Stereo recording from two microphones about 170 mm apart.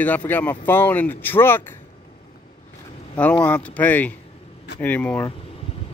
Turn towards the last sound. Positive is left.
turn(degrees=10)  # may be behind; listen again after turning